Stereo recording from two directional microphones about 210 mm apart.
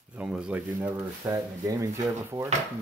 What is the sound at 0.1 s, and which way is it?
Speech, 5° right (ahead or behind).